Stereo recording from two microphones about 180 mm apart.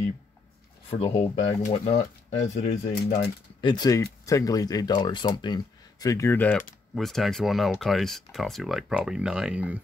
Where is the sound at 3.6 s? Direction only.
20° left (ahead or behind).